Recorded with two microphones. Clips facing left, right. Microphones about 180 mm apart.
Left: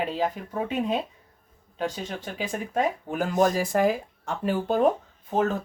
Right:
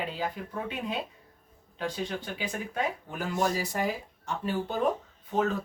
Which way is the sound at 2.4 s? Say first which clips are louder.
Left 8 dB; 45° left (ahead or behind).